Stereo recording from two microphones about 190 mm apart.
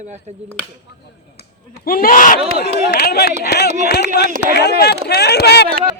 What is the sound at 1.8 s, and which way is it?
Speech, 50° left (ahead or behind).